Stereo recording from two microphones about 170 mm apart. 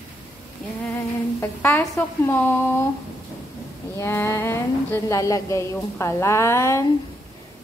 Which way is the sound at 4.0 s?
15° left (ahead or behind).